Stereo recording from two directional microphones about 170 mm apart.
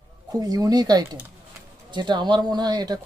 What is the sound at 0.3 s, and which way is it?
Speech, 20° right (ahead or behind).